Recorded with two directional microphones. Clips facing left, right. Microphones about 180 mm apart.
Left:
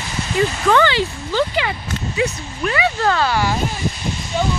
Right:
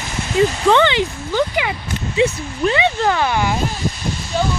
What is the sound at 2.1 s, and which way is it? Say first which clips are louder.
Speech: right 5 dB; 25° right (ahead or behind).